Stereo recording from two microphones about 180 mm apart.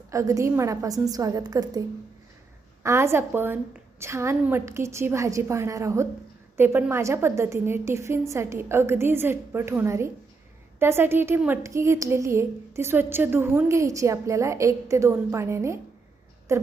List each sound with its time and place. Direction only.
0.1 s a woman's voice: 15° right (ahead or behind)
2.8 s a woman's voice: 15° right (ahead or behind)